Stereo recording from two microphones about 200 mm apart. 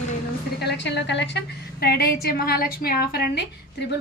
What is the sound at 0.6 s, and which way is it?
A woman's voice, 55° left (ahead or behind).